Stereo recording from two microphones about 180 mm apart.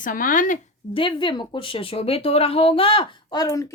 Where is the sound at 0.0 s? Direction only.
50° left (ahead or behind).